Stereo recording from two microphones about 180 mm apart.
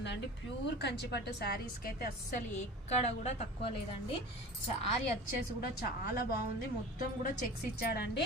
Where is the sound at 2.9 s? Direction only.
40° left (ahead or behind).